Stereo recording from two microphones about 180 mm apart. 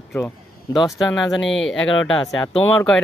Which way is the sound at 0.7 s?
Centre (ahead or behind).